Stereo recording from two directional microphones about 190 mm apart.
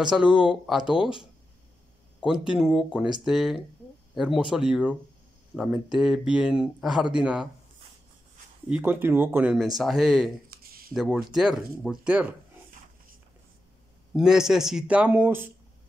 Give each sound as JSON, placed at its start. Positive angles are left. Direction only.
{"t": 0.0, "sound": "speech", "side_deg": -5}
{"t": 8.6, "sound": "speech", "side_deg": -10}
{"t": 10.5, "sound": "a sound", "side_deg": -50}
{"t": 10.9, "sound": "speech", "side_deg": 0}
{"t": 14.1, "sound": "speech", "side_deg": -5}